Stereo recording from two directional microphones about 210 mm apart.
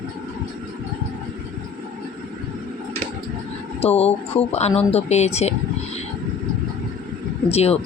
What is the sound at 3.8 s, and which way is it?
Speech, 30° left (ahead or behind).